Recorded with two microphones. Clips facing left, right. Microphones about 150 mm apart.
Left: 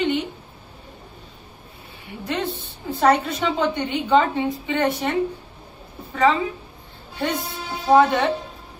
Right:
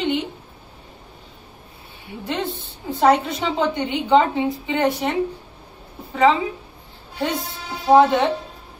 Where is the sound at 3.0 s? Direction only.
15° right (ahead or behind).